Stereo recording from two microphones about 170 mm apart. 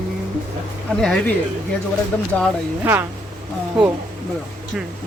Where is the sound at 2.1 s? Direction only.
10° left (ahead or behind).